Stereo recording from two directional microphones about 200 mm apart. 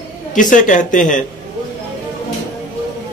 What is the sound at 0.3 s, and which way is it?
Speech, 40° left (ahead or behind).